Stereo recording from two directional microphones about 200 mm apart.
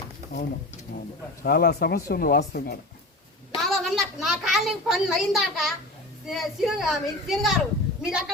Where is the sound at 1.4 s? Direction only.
55° left (ahead or behind).